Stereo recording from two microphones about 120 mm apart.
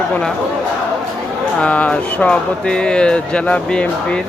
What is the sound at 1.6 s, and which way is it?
Speech, 10° left (ahead or behind).